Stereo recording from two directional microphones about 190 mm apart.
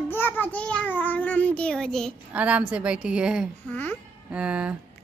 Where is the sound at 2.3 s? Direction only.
5° right (ahead or behind).